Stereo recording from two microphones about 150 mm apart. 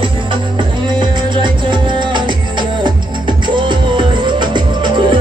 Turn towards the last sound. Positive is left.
turn(degrees=-30)  # may be behind; listen again after turning